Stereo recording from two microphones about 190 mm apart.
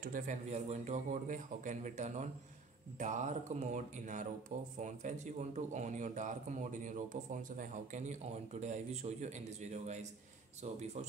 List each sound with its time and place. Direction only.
0.0 s speech: 45° right (ahead or behind)